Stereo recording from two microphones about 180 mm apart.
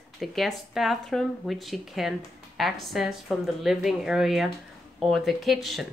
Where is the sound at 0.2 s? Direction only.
Centre (ahead or behind).